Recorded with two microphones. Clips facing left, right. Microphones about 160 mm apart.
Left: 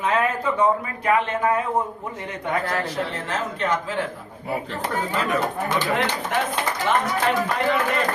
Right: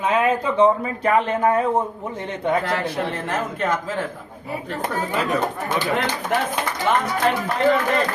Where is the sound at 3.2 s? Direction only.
50° right (ahead or behind).